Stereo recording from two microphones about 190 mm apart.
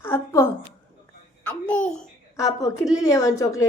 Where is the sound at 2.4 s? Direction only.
15° left (ahead or behind).